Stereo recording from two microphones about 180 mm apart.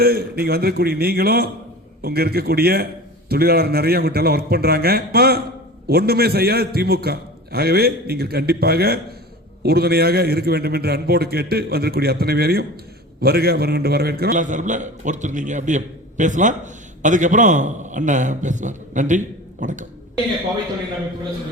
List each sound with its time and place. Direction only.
0.0 s a man's voice: 60° right (ahead or behind)